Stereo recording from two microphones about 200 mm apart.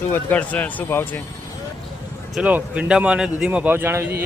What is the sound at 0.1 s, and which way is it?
Speech, 10° left (ahead or behind).